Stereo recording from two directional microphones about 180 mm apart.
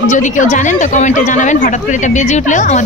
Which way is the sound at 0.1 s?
45° left (ahead or behind).